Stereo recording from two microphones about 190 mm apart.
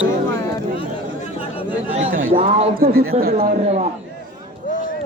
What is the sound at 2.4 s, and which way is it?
Speech, 30° right (ahead or behind).